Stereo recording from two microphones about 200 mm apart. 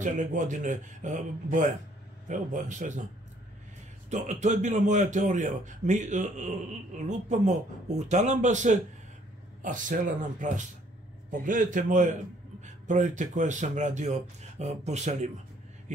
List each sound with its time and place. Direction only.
0.0 s speech: 40° right (ahead or behind)
4.1 s speech: 35° right (ahead or behind)